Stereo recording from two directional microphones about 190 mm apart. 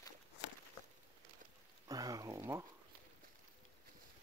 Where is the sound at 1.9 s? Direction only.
20° right (ahead or behind).